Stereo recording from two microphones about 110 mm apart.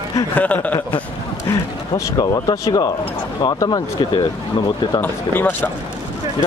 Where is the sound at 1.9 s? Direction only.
35° left (ahead or behind).